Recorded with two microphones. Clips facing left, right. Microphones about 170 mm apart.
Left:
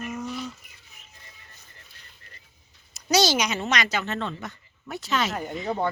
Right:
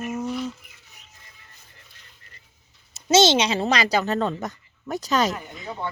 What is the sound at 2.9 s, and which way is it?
A woman's voice, 25° right (ahead or behind).